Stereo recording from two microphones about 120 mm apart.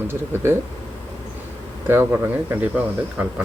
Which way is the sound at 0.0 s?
20° right (ahead or behind).